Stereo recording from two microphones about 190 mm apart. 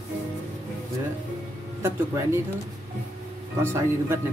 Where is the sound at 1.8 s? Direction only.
15° right (ahead or behind).